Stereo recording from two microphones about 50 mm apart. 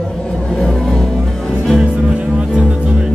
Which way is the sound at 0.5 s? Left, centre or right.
Centre.